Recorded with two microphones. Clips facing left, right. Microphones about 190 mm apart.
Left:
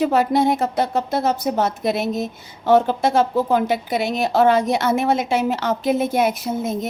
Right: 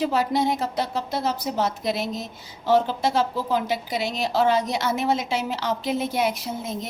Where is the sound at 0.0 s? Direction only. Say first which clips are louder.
Left 5 dB; 55° left (ahead or behind).